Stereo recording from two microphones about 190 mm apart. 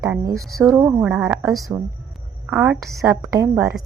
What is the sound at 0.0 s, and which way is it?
Speech, 15° right (ahead or behind).